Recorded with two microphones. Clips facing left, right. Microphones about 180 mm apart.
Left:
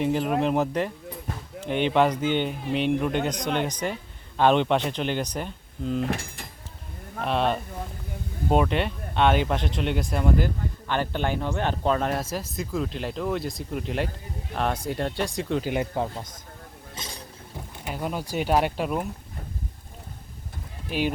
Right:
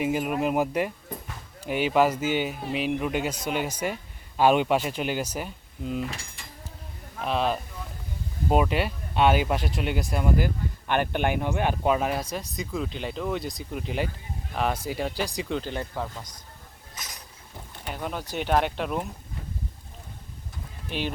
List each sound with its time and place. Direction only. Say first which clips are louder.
0.0 s speech: left 2 dB; 10° right (ahead or behind)
6.0 s speech: left 5 dB; 55° left (ahead or behind)
7.3 s speech: left 1 dB; centre (ahead or behind)
10.8 s speech: right 2 dB; 15° right (ahead or behind); by 15.7 s centre (ahead or behind)
15.7 s speech: left 5 dB; 15° left (ahead or behind)
16.9 s a sound: left 4 dB; 30° left (ahead or behind)
17.8 s speech: left 2 dB; 5° left (ahead or behind)